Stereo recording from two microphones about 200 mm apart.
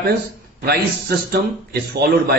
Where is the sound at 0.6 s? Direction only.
55° right (ahead or behind).